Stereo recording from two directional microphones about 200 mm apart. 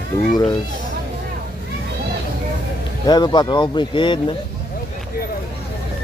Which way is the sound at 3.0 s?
20° left (ahead or behind).